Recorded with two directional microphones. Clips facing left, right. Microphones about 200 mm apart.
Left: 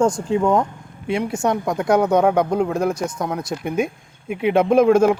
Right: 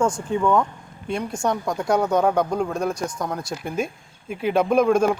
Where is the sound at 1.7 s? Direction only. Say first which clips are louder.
Left 5 dB; centre (ahead or behind).